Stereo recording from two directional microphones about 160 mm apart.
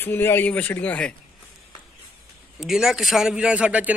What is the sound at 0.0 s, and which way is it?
Speech, 15° left (ahead or behind).